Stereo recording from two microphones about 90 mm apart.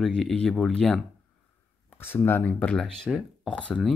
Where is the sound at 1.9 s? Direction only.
20° left (ahead or behind).